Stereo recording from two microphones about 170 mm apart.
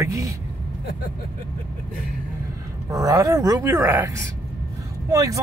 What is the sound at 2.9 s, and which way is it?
Speech, 20° right (ahead or behind).